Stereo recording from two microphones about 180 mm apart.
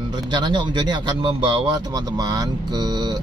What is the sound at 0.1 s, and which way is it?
Speech, 25° right (ahead or behind).